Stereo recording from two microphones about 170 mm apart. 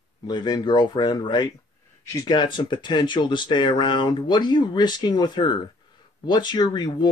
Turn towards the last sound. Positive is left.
turn(degrees=25)  # may be behind; listen again after turning